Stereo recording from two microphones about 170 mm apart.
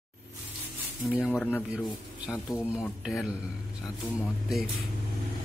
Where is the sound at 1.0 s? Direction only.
5° right (ahead or behind).